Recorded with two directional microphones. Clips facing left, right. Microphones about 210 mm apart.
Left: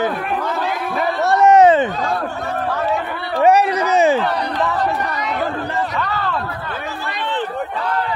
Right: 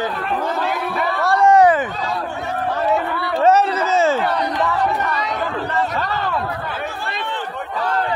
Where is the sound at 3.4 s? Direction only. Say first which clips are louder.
Left 1 dB; 15° left (ahead or behind).